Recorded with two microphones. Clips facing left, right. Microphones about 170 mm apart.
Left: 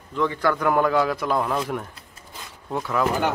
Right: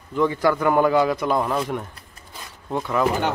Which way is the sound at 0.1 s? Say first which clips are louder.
Right 3 dB; 10° right (ahead or behind).